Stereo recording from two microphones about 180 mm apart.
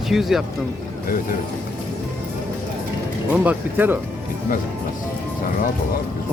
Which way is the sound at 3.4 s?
10° right (ahead or behind).